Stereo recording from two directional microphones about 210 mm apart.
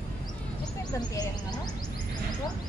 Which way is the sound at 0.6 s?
20° left (ahead or behind).